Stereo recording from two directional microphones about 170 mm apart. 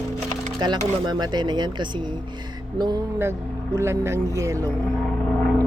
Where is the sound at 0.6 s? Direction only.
25° right (ahead or behind).